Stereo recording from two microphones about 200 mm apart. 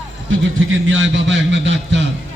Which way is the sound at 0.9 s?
70° right (ahead or behind).